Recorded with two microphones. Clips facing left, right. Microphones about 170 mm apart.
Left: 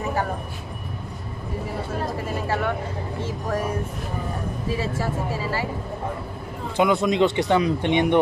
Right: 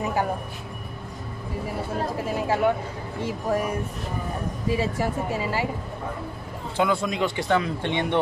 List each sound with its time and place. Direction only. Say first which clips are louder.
3.2 s speech: right 3 dB; 15° right (ahead or behind)
4.6 s speech: right 2 dB; 15° right (ahead or behind)
6.8 s speech: left 5 dB; 20° left (ahead or behind)